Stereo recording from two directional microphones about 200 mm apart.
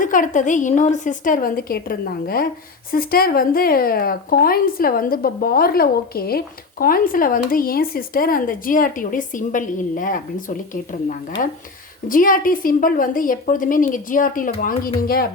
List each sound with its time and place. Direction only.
0.0 s a woman's voice: 40° left (ahead or behind)